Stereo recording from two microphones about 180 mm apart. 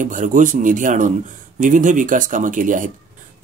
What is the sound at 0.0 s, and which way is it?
Speech, 45° right (ahead or behind).